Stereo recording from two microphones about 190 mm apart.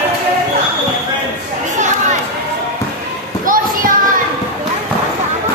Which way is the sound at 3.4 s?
45° right (ahead or behind).